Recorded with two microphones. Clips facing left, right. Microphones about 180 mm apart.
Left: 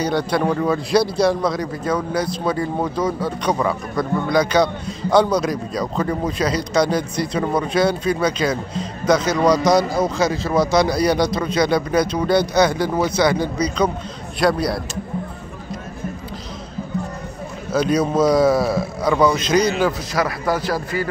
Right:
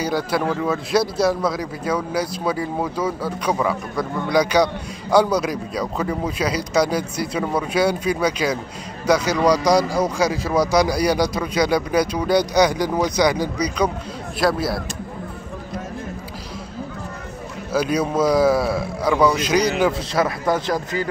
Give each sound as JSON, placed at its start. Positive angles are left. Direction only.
{"t": 0.0, "sound": "a man's voice", "side_deg": -5}
{"t": 14.4, "sound": "a man's voice", "side_deg": 0}
{"t": 17.7, "sound": "a man's voice", "side_deg": -5}
{"t": 20.1, "sound": "a man's voice", "side_deg": -25}